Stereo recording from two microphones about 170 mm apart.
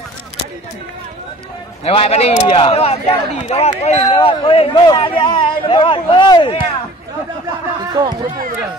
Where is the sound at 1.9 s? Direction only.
35° left (ahead or behind).